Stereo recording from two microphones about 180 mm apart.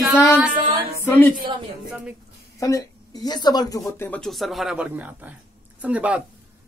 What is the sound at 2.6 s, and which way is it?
Speech, 20° left (ahead or behind).